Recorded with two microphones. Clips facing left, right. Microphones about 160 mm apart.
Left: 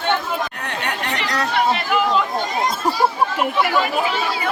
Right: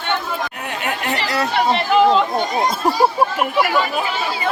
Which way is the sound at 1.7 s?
20° right (ahead or behind).